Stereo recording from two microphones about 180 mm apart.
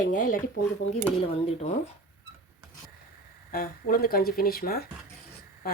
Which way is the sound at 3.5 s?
55° left (ahead or behind).